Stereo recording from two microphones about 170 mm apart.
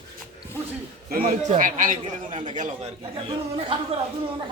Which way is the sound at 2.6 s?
35° right (ahead or behind).